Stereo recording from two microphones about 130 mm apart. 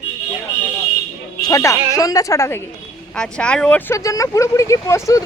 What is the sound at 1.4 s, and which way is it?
Speech, 30° left (ahead or behind).